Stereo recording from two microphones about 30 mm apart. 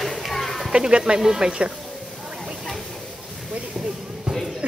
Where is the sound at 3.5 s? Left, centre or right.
Right.